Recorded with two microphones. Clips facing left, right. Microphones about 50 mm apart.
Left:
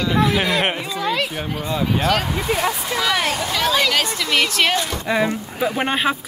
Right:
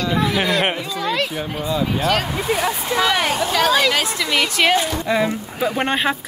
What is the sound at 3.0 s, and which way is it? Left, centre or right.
Speech, right.